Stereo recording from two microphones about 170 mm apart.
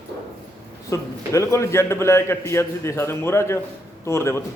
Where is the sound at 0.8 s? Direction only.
20° left (ahead or behind).